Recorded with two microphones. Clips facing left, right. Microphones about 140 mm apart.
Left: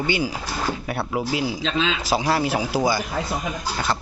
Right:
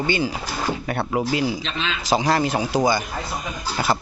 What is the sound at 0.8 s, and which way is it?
Speech, centre (ahead or behind).